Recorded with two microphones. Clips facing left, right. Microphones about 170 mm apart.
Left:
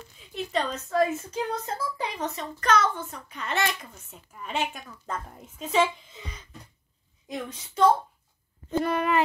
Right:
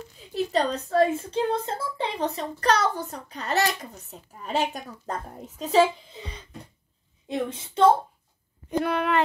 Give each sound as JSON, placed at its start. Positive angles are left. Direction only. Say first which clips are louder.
{"t": 0.2, "sound": "a woman's voice", "louder": "right 4 dB", "side_deg": -35}
{"t": 8.7, "sound": "speech", "louder": "right 1 dB", "side_deg": 0}